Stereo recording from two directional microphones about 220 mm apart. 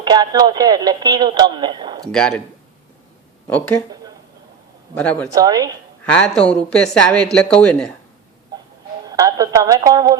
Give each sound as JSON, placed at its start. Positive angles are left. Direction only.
{"t": 0.0, "sound": "speech", "side_deg": -20}
{"t": 2.1, "sound": "a woman's voice", "side_deg": 5}
{"t": 3.4, "sound": "speech", "side_deg": 5}
{"t": 4.9, "sound": "speech", "side_deg": 5}
{"t": 5.3, "sound": "speech", "side_deg": -15}
{"t": 6.1, "sound": "a woman's voice", "side_deg": 5}
{"t": 9.0, "sound": "a woman's voice", "side_deg": -15}